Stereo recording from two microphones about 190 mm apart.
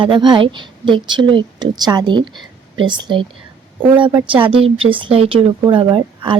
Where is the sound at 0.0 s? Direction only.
25° right (ahead or behind).